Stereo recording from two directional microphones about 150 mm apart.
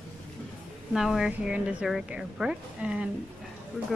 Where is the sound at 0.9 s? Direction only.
Centre (ahead or behind).